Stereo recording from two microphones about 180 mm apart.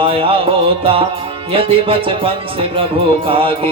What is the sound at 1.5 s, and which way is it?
Music, 30° right (ahead or behind).